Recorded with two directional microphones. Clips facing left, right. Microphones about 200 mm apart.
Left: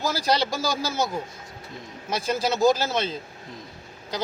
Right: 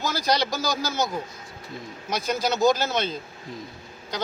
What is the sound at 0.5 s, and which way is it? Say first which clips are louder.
Speech: even; 30° left (ahead or behind).